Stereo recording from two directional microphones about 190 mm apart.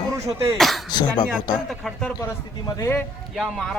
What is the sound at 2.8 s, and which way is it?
Speech, 15° left (ahead or behind).